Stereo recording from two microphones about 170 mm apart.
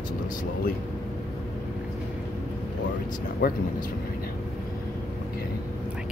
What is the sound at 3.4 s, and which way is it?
Speech, 60° left (ahead or behind).